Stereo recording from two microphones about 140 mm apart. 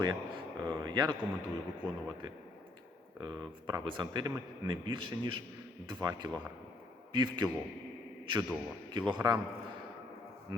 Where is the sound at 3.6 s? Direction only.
35° right (ahead or behind).